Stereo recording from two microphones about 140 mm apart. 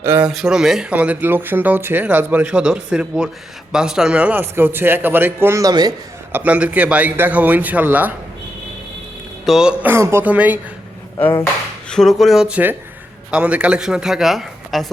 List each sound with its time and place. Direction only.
0.0 s speech: 15° right (ahead or behind)
0.3 s speech: 5° right (ahead or behind); by 5.9 s 25° right (ahead or behind)
6.3 s speech: 10° right (ahead or behind)
9.5 s speech: 5° right (ahead or behind)
11.9 s speech: 5° left (ahead or behind)